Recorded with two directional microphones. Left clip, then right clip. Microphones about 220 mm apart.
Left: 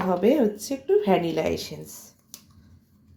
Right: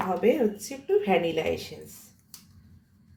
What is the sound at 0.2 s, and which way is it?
A woman's voice, 30° left (ahead or behind).